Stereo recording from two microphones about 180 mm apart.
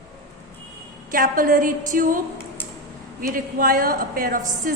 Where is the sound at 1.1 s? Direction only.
50° right (ahead or behind).